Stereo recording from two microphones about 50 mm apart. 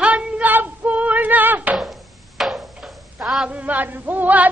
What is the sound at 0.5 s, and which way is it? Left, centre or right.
Female singing, right.